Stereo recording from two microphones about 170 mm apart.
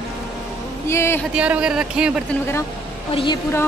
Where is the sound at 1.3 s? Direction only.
5° right (ahead or behind).